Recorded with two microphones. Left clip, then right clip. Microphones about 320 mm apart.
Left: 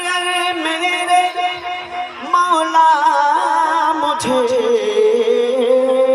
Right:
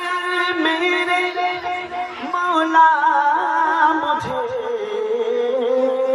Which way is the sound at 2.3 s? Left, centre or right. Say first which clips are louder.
Left 3 dB; left.